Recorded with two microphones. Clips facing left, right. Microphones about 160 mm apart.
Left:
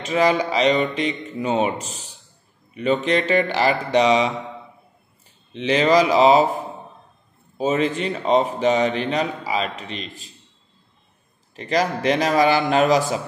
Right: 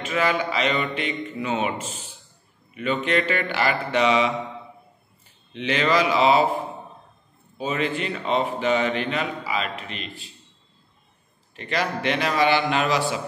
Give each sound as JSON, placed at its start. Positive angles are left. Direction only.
{"t": 0.0, "sound": "speech", "side_deg": 35}
{"t": 5.5, "sound": "speech", "side_deg": 35}
{"t": 7.5, "sound": "speech", "side_deg": 35}
{"t": 11.5, "sound": "speech", "side_deg": 35}